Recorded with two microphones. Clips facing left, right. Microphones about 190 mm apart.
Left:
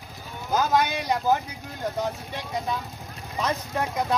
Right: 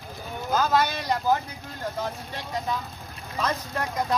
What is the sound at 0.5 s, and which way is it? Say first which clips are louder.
Speech: left 1 dB; 15° left (ahead or behind).